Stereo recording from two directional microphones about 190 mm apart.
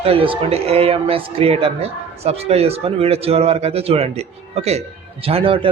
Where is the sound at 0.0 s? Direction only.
30° right (ahead or behind).